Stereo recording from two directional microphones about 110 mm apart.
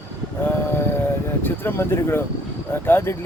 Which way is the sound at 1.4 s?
20° left (ahead or behind).